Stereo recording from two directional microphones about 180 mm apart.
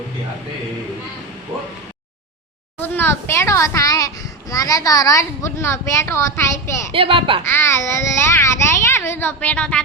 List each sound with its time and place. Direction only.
2.7 s a child's voice: 10° left (ahead or behind)
6.9 s a child's voice: 30° right (ahead or behind)
7.4 s a child's voice: 15° left (ahead or behind)